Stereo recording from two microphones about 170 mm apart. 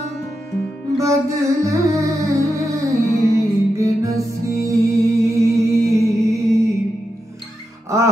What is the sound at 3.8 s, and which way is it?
Music, 20° right (ahead or behind).